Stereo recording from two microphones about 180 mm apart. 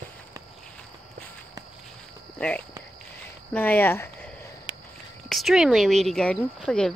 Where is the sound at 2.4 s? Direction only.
5° left (ahead or behind).